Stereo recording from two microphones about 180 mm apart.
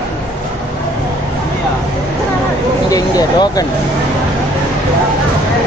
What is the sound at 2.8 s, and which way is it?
Speech, 20° left (ahead or behind).